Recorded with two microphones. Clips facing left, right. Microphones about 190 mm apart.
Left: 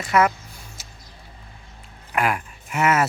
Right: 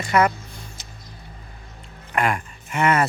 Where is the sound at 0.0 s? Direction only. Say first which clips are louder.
Even; centre (ahead or behind).